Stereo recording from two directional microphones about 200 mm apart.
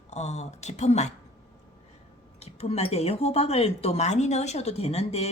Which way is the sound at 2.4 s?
30° left (ahead or behind).